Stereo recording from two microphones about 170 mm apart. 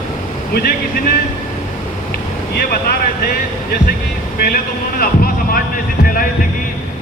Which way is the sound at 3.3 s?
60° left (ahead or behind).